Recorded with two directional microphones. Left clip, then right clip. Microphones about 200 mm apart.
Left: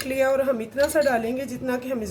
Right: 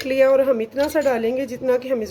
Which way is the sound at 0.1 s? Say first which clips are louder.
Right 6 dB; 40° right (ahead or behind).